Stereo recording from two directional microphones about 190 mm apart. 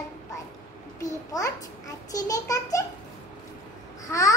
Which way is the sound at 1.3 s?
20° left (ahead or behind).